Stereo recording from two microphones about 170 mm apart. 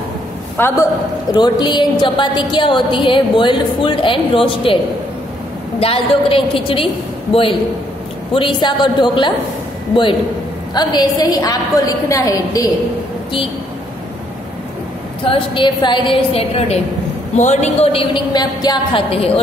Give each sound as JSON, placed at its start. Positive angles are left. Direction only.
{"t": 0.6, "sound": "a man's voice", "side_deg": 15}
{"t": 1.3, "sound": "a woman's voice", "side_deg": 25}
{"t": 5.8, "sound": "a woman's voice", "side_deg": 35}
{"t": 8.3, "sound": "a woman's voice", "side_deg": 30}
{"t": 10.7, "sound": "a woman's voice", "side_deg": 25}
{"t": 15.2, "sound": "a woman's voice", "side_deg": 30}